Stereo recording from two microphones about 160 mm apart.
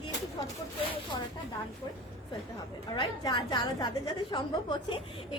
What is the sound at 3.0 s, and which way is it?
A woman's voice, 25° left (ahead or behind).